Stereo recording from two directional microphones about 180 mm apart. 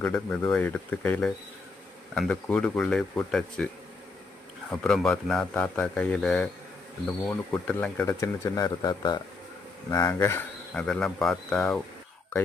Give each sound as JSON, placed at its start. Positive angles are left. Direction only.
{"t": 0.0, "sound": "a man's voice", "side_deg": 5}
{"t": 4.7, "sound": "a man's voice", "side_deg": 5}